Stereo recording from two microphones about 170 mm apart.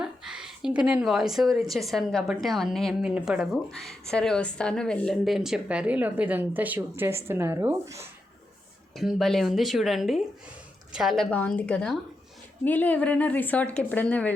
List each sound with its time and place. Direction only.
0.0 s a woman's voice: 5° right (ahead or behind)
9.0 s a woman's voice: centre (ahead or behind)